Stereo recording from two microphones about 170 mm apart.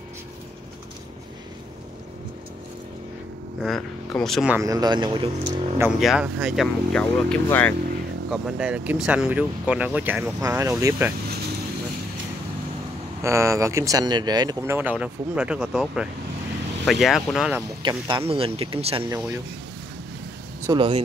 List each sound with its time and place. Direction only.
3.6 s speech: centre (ahead or behind)
4.5 s speech: 20° right (ahead or behind)
5.8 s speech: 5° right (ahead or behind)
8.3 s speech: 5° right (ahead or behind)
13.2 s speech: 15° right (ahead or behind)
17.8 s speech: 25° right (ahead or behind)
19.0 s speech: 15° right (ahead or behind)
20.6 s speech: 30° right (ahead or behind)